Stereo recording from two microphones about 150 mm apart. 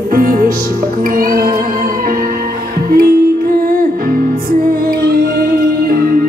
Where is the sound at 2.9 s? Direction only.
75° right (ahead or behind).